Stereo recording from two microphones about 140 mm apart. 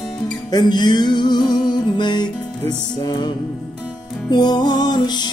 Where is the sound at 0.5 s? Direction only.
30° left (ahead or behind).